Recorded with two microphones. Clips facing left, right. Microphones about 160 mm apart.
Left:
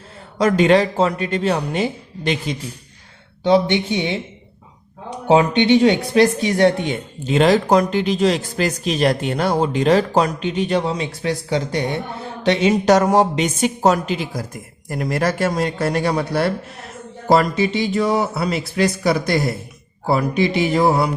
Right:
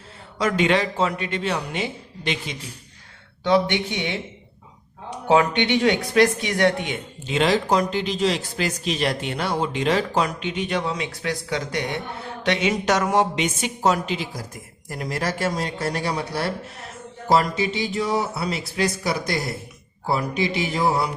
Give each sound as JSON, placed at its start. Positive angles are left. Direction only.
{"t": 0.3, "sound": "speech", "side_deg": 40}
{"t": 3.4, "sound": "speech", "side_deg": 25}
{"t": 5.3, "sound": "speech", "side_deg": 25}
{"t": 7.3, "sound": "speech", "side_deg": 45}